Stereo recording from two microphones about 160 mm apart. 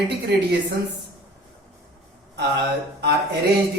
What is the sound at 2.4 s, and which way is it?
Speech, 90° right.